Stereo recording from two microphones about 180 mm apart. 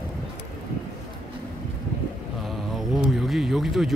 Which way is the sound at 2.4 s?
Centre (ahead or behind).